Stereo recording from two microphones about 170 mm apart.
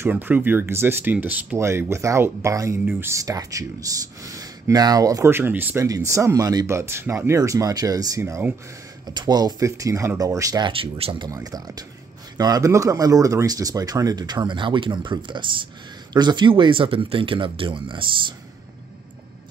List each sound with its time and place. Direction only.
0.0 s speech: 10° right (ahead or behind)
9.0 s speech: 25° right (ahead or behind)
10.7 s speech: 35° right (ahead or behind)
11.2 s speech: 20° right (ahead or behind)